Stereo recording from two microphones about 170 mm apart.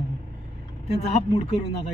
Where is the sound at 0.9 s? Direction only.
35° left (ahead or behind).